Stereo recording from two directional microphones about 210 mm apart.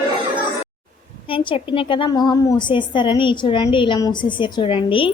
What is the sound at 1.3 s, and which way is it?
A woman's voice, 25° left (ahead or behind).